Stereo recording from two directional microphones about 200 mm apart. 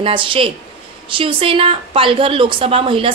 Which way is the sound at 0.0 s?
25° right (ahead or behind).